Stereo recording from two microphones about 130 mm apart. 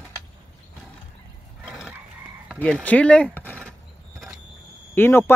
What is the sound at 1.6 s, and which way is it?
Frog, 5° right (ahead or behind).